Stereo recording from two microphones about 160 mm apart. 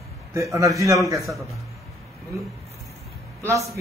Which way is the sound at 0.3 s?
20° right (ahead or behind).